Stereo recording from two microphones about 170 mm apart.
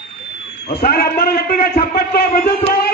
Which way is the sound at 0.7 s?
65° left (ahead or behind).